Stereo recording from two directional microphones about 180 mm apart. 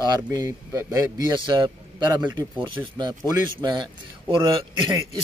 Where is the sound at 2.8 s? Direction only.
15° right (ahead or behind).